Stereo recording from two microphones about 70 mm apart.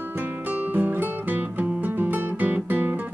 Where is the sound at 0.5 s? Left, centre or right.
Right.